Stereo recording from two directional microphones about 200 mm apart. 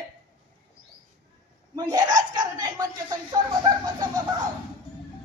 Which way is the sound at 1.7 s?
20° right (ahead or behind).